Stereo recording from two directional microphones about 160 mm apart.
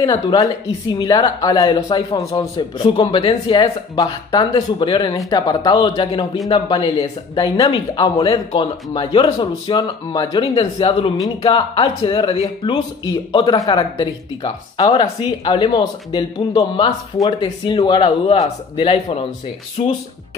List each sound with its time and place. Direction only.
0.0 s speech: 25° left (ahead or behind); by 19.9 s 40° left (ahead or behind)